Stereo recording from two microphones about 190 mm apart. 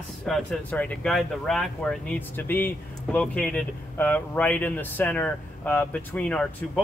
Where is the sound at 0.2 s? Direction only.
5° left (ahead or behind).